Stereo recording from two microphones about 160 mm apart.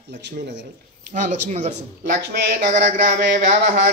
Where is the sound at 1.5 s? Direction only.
45° right (ahead or behind).